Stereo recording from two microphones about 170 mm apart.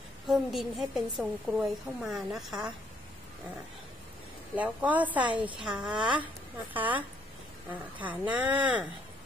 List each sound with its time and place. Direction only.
0.3 s a woman's voice: centre (ahead or behind)
4.6 s a woman's voice: 10° right (ahead or behind)
5.9 s a woman's voice: 25° right (ahead or behind)
6.7 s speech: 10° right (ahead or behind)
8.0 s speech: 10° right (ahead or behind)